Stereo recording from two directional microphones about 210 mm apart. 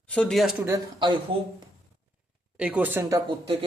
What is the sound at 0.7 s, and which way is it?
Speech, 20° right (ahead or behind).